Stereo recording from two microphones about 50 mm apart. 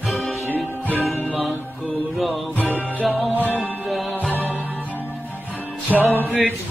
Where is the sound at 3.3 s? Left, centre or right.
Right.